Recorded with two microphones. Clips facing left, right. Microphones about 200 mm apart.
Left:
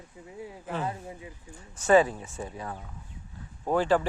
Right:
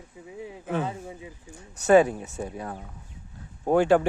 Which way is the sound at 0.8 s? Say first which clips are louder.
Right 2 dB; 25° right (ahead or behind).